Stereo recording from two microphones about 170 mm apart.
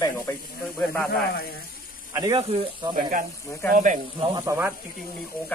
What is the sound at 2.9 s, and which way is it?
Speech, 50° right (ahead or behind).